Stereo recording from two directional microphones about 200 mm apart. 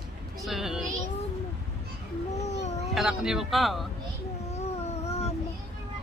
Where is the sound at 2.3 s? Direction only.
35° left (ahead or behind).